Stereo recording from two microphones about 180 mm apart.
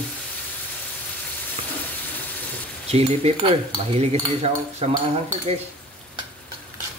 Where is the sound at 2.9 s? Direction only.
35° right (ahead or behind).